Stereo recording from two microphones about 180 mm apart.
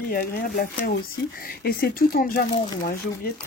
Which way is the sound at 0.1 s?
50° left (ahead or behind).